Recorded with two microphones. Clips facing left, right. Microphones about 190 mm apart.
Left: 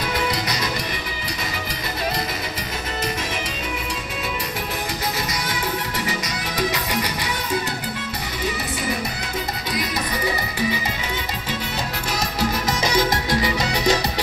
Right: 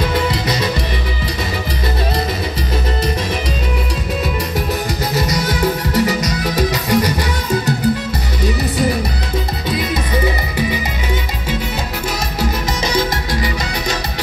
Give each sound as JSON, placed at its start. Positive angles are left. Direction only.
{"t": 5.1, "sound": "music", "side_deg": -40}